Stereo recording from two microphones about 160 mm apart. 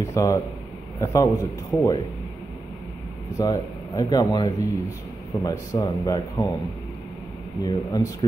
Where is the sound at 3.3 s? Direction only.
20° left (ahead or behind).